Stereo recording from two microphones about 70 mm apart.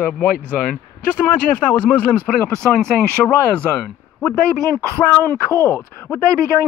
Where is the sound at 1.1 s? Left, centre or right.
Left.